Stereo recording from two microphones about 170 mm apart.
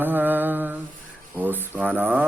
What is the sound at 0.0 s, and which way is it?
Mantra, 10° right (ahead or behind).